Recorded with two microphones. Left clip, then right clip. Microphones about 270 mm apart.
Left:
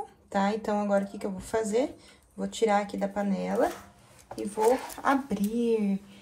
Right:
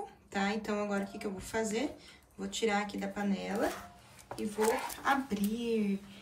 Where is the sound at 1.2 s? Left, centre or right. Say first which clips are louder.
Left 5 dB; centre.